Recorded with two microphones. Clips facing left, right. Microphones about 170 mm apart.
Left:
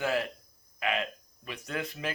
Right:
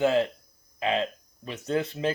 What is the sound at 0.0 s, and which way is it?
Speech, 25° right (ahead or behind).